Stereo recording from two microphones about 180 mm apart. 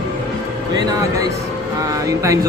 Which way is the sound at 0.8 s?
20° right (ahead or behind).